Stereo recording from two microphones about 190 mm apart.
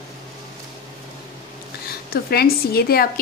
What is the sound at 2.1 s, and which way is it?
A woman's voice, 55° left (ahead or behind).